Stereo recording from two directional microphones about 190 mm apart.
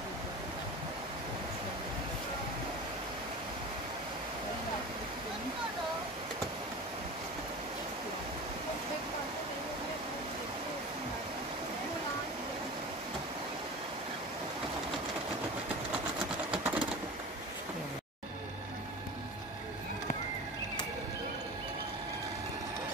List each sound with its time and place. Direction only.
16.4 s sewing machine: 5° right (ahead or behind)